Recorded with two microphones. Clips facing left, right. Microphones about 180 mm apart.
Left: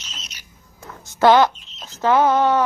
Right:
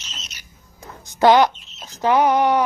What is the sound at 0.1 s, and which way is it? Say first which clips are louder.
Bird: right 1 dB; 10° left (ahead or behind).